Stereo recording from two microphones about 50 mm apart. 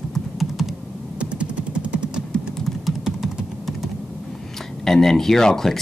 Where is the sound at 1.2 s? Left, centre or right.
Right.